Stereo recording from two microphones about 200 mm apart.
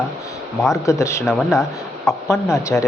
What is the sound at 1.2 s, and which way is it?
Speech, centre (ahead or behind).